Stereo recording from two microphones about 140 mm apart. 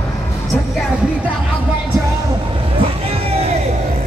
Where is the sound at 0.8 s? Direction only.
5° right (ahead or behind).